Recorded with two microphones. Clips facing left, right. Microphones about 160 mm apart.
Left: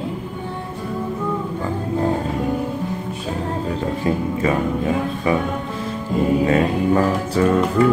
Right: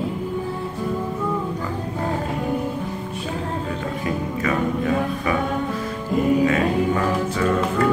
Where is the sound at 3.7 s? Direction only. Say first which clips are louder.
Left 4 dB; 25° left (ahead or behind).